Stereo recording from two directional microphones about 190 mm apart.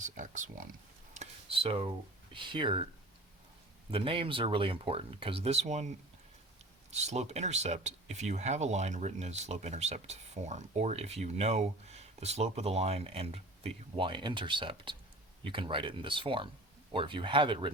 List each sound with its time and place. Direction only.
0.0 s speech: 40° right (ahead or behind)
1.1 s a sound: 35° right (ahead or behind)
2.3 s speech: 25° right (ahead or behind)
3.9 s speech: 30° right (ahead or behind)
6.9 s speech: 35° right (ahead or behind)